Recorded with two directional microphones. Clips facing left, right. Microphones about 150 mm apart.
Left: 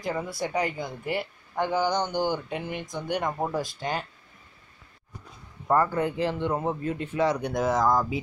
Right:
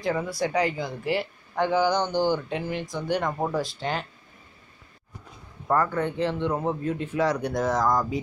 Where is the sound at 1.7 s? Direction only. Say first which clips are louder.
Right 3 dB; 15° left (ahead or behind).